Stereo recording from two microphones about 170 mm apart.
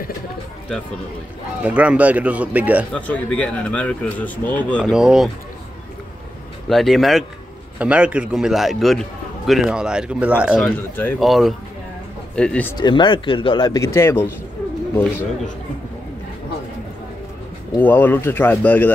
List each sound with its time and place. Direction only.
1.6 s speech: 10° right (ahead or behind)
2.9 s speech: 5° left (ahead or behind)
4.9 s a man's voice: 5° right (ahead or behind)
6.7 s a man's voice: centre (ahead or behind)
12.7 s speech: 25° left (ahead or behind)
17.7 s speech: 10° left (ahead or behind)